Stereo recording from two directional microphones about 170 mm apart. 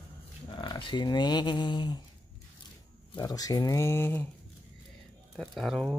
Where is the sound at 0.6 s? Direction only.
30° left (ahead or behind).